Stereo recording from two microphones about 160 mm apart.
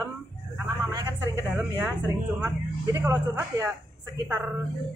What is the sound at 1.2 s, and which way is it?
Speech, 15° right (ahead or behind).